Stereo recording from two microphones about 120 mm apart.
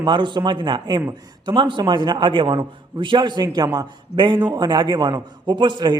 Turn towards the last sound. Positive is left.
turn(degrees=-40)  # may be behind; listen again after turning